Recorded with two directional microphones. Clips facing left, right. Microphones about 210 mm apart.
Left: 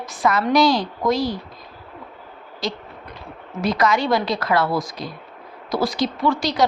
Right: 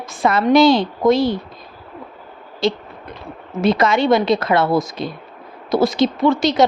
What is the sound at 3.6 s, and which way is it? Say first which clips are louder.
A woman's voice: right 4 dB; 25° right (ahead or behind).